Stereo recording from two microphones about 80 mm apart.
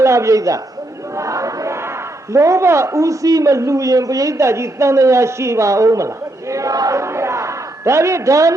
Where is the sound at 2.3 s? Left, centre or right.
Right.